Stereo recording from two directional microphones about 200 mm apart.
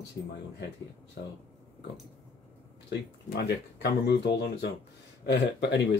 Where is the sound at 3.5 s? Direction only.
55° left (ahead or behind).